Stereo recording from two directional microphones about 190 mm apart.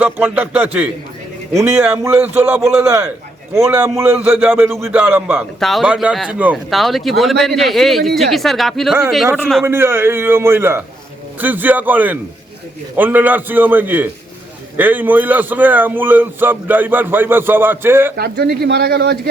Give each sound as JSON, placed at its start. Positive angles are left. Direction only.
{"t": 0.0, "sound": "a man's voice", "side_deg": -10}
{"t": 9.6, "sound": "a man's voice", "side_deg": -10}
{"t": 18.2, "sound": "speech", "side_deg": -55}